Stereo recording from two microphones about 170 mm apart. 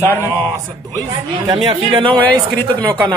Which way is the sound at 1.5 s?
25° right (ahead or behind).